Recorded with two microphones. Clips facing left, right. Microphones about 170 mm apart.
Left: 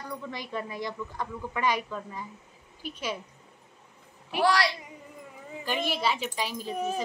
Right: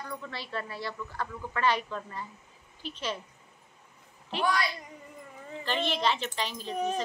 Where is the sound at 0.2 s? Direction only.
15° left (ahead or behind).